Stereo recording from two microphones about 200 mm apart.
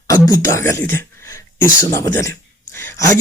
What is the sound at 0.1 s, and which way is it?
Speech, 15° left (ahead or behind).